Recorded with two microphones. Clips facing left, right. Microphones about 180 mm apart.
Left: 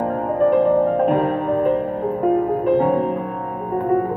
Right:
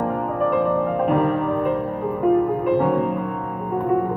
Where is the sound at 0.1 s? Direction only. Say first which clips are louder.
Left 4 dB; 35° left (ahead or behind).